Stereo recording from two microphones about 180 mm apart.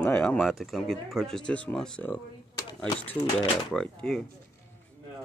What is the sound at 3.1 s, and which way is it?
Speech, 30° left (ahead or behind).